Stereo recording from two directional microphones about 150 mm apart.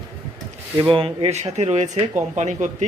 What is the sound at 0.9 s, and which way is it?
Speech, 35° right (ahead or behind).